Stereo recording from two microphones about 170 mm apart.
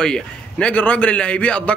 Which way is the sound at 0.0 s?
5° left (ahead or behind).